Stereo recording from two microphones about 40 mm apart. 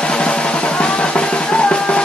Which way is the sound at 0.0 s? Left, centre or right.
Left.